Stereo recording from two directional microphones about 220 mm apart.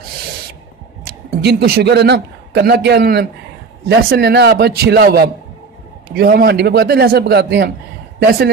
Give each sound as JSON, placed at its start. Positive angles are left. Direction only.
{"t": 1.0, "sound": "a man's voice", "side_deg": -45}